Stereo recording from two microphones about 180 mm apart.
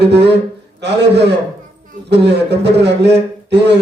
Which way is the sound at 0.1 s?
70° right (ahead or behind).